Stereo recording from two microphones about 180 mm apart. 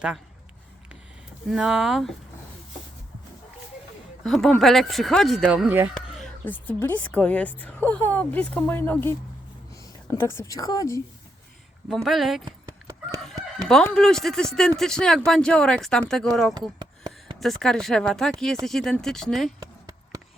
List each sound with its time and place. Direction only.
1.5 s speech: 5° right (ahead or behind)
4.2 s speech: centre (ahead or behind)
5.9 s a sound: centre (ahead or behind)
6.4 s a woman's voice: 10° left (ahead or behind)
10.2 s a woman's voice: 15° left (ahead or behind)
11.9 s speech: centre (ahead or behind)
12.5 s fowl: 20° right (ahead or behind)
13.7 s speech: 5° left (ahead or behind)
19.5 s a sound: 20° right (ahead or behind)